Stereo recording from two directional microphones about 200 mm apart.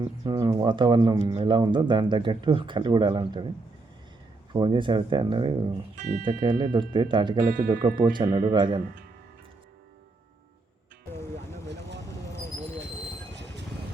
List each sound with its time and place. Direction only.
0.0 s speech: 20° right (ahead or behind)
4.5 s speech: 25° right (ahead or behind)
6.0 s speech: 35° right (ahead or behind)
6.2 s speech: 20° right (ahead or behind)
7.4 s speech: 40° right (ahead or behind)
7.9 s speech: 20° right (ahead or behind)
13.3 s vehicle: 60° right (ahead or behind)